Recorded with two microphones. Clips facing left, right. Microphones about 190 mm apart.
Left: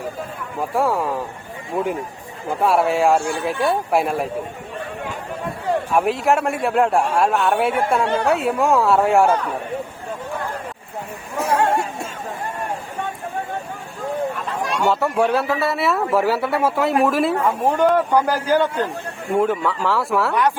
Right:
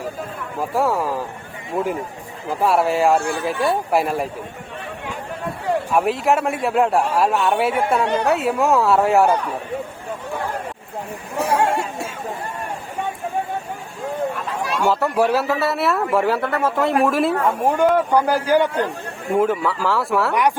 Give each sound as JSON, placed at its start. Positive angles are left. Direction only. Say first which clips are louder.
{"t": 0.6, "sound": "a man's voice", "louder": "even", "side_deg": 0}
{"t": 3.2, "sound": "speech", "louder": "even", "side_deg": -60}
{"t": 3.4, "sound": "a man's voice", "louder": "even", "side_deg": 0}
{"t": 5.9, "sound": "a man's voice", "louder": "even", "side_deg": 0}
{"t": 11.3, "sound": "speech", "louder": "even", "side_deg": -10}
{"t": 14.3, "sound": "a man's voice", "louder": "even", "side_deg": -5}
{"t": 17.6, "sound": "speech", "louder": "even", "side_deg": -10}
{"t": 19.3, "sound": "a man's voice", "louder": "right 1 dB", "side_deg": 0}